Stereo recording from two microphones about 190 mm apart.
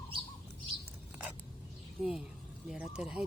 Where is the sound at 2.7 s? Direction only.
5° right (ahead or behind).